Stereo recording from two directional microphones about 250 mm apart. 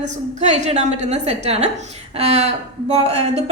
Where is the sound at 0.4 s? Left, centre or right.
Right.